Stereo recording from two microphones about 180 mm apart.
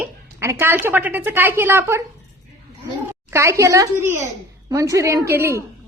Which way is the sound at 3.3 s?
15° right (ahead or behind).